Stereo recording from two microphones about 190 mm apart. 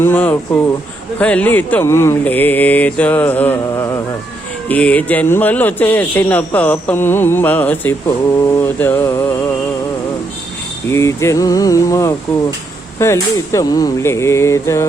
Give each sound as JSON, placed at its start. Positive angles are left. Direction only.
{"t": 0.0, "sound": "a man's voice", "side_deg": 10}
{"t": 10.9, "sound": "a man's voice", "side_deg": 15}